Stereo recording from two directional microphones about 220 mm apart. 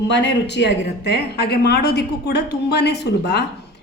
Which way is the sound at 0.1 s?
55° left (ahead or behind).